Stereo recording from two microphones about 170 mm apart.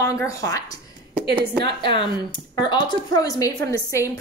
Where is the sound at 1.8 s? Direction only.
30° left (ahead or behind).